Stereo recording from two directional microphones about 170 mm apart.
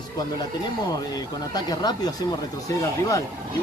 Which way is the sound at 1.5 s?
25° left (ahead or behind).